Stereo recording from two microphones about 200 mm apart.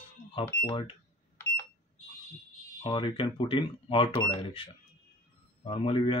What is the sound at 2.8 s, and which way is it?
Speech, 25° left (ahead or behind).